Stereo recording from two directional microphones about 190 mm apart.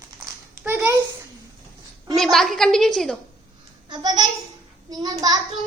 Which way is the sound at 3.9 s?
20° right (ahead or behind).